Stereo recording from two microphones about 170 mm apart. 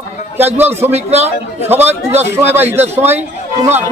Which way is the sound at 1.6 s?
10° right (ahead or behind).